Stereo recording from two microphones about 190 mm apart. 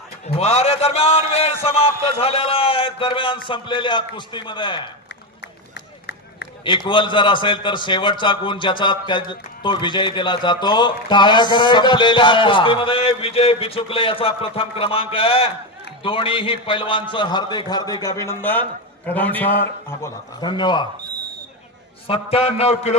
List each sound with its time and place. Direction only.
0.3 s a man's voice: 35° left (ahead or behind)
6.7 s a man's voice: 25° left (ahead or behind)
20.4 s a man's voice: 25° left (ahead or behind)
22.0 s a man's voice: 30° left (ahead or behind)